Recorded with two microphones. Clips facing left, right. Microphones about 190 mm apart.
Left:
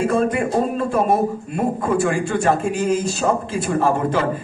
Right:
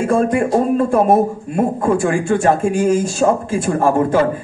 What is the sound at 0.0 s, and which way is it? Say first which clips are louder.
A man's voice: right 3 dB; 45° right (ahead or behind).